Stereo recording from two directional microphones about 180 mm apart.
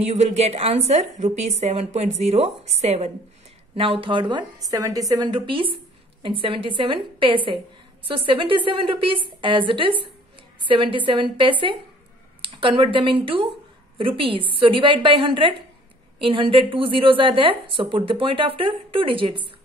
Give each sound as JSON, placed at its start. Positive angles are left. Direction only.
{"t": 0.0, "sound": "a woman's voice", "side_deg": -40}